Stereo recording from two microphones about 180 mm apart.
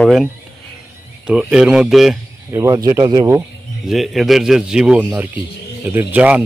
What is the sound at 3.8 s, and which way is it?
Speech, centre (ahead or behind).